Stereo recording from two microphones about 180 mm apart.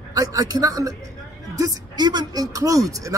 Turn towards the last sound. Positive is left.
turn(degrees=-20)  # may be behind; listen again after turning